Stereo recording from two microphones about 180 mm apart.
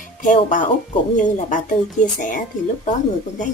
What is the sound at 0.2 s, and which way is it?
Speech, 45° left (ahead or behind).